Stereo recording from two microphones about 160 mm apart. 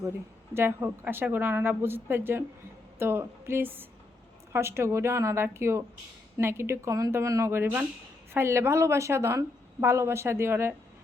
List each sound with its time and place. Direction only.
0.5 s speech: 15° right (ahead or behind)